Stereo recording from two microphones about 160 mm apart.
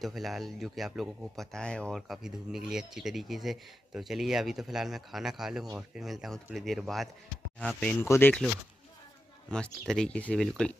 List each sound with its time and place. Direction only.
0.0 s speech: centre (ahead or behind)
9.5 s speech: 5° left (ahead or behind)